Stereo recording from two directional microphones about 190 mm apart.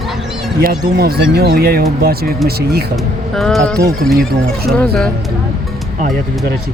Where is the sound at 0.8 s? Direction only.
55° right (ahead or behind).